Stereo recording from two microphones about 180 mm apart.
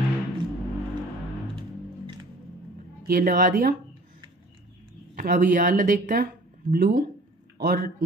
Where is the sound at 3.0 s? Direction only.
50° right (ahead or behind).